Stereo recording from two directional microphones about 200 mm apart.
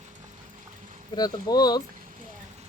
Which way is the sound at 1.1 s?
20° left (ahead or behind).